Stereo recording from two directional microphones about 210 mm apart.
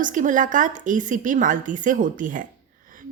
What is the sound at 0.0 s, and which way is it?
A woman's voice, 40° right (ahead or behind).